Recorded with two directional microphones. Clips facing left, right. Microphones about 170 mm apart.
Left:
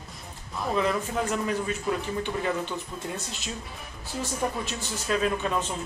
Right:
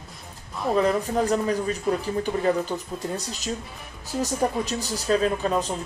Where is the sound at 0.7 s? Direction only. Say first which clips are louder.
Right 5 dB; 35° right (ahead or behind).